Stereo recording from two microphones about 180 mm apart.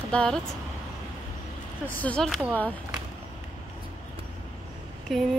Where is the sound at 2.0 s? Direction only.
5° left (ahead or behind).